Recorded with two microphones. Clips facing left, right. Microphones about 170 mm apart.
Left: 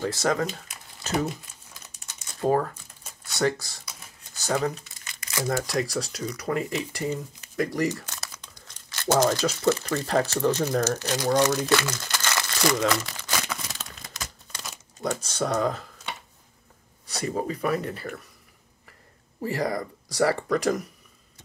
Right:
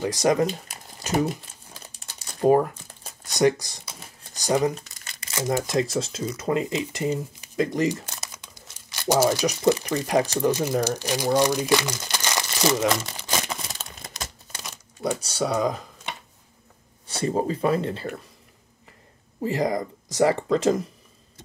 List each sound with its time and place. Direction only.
0.0 s speech: 15° right (ahead or behind)
0.5 s a sound: 35° right (ahead or behind)
1.7 s crumpling: 30° right (ahead or behind)
2.4 s speech: 15° right (ahead or behind)
15.0 s speech: 10° right (ahead or behind)
17.0 s speech: 30° right (ahead or behind)
19.4 s speech: 20° right (ahead or behind)